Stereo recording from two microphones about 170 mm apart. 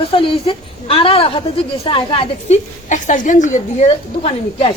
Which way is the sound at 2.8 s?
45° left (ahead or behind).